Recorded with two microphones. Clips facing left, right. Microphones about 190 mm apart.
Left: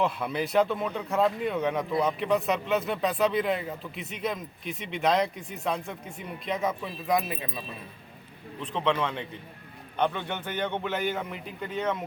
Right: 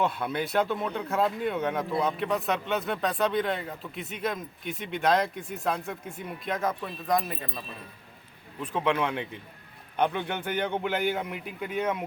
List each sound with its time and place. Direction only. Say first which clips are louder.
0.0 s speech: even; centre (ahead or behind)
8.6 s a man's voice: right 1 dB; 10° right (ahead or behind)